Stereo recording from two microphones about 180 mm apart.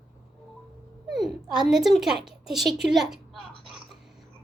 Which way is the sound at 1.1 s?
Centre (ahead or behind).